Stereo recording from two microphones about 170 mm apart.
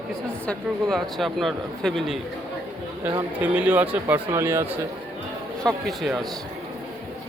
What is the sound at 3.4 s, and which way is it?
Speech, 10° right (ahead or behind).